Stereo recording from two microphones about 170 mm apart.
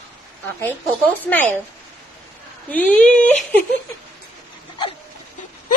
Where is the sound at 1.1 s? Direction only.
10° left (ahead or behind).